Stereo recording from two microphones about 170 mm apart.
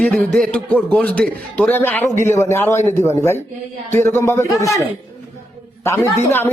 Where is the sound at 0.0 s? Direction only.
5° left (ahead or behind).